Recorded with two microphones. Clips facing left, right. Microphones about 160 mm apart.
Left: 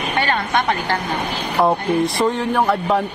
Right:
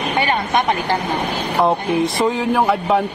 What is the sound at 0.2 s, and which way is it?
Speech, 20° right (ahead or behind).